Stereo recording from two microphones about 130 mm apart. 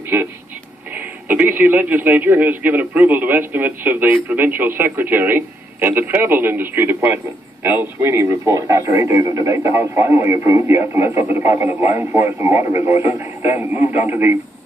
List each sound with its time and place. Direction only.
0.9 s a man's voice: 10° right (ahead or behind)